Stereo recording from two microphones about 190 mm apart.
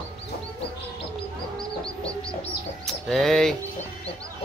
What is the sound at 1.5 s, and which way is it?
Chicken, 5° left (ahead or behind).